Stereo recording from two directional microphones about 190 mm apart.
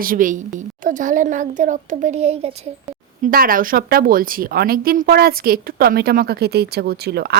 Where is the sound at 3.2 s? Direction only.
50° right (ahead or behind).